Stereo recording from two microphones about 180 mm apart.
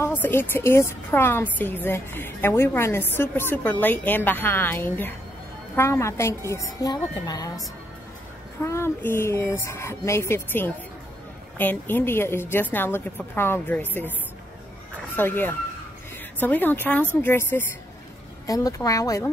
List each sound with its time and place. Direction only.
0.0 s a woman's voice: 10° left (ahead or behind)
8.6 s a woman's voice: 15° left (ahead or behind)
15.1 s a woman's voice: 10° left (ahead or behind)